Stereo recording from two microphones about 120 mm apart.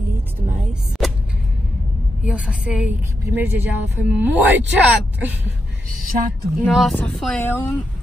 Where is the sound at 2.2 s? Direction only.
10° right (ahead or behind).